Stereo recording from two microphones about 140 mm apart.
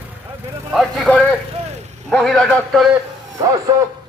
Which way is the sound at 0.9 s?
10° left (ahead or behind).